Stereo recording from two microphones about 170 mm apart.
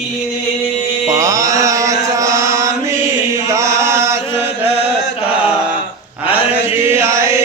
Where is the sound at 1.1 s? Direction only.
20° right (ahead or behind).